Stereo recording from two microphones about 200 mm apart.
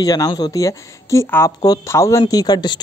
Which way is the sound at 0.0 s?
20° left (ahead or behind).